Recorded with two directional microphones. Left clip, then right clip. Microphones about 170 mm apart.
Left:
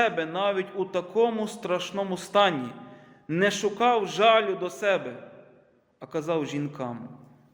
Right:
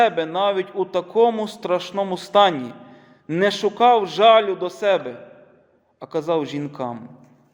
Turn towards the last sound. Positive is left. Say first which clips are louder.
# right 5 dB
turn(degrees=-20)  # may be behind; listen again after turning